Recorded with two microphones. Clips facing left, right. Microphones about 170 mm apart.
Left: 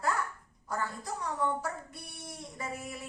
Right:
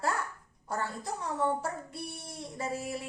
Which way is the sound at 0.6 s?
30° right (ahead or behind).